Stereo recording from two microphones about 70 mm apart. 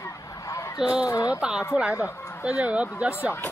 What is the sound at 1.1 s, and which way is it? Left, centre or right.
Speech, left.